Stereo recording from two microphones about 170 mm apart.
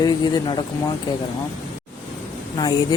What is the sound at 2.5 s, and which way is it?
Speech, 25° left (ahead or behind).